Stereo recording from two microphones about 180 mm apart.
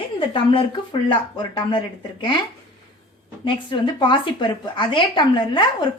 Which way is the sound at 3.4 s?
25° left (ahead or behind).